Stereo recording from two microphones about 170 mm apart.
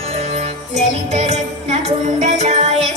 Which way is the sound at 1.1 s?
40° right (ahead or behind).